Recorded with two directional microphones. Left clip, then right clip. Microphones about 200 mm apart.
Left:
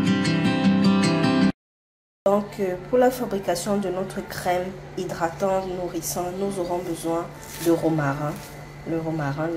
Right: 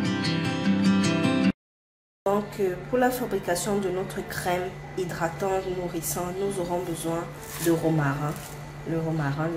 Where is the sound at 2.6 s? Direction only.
10° left (ahead or behind).